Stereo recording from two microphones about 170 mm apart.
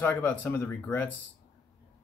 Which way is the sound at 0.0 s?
10° left (ahead or behind).